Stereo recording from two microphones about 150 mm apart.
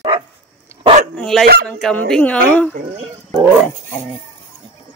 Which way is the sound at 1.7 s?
5° left (ahead or behind).